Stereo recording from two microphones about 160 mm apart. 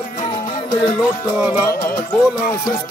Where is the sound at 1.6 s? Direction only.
20° left (ahead or behind).